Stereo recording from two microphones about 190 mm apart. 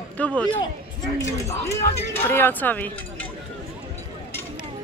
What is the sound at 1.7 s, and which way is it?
Speech, 15° left (ahead or behind).